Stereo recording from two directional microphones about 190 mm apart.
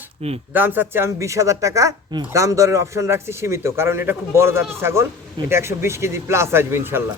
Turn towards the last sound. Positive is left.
turn(degrees=-10)  # may be behind; listen again after turning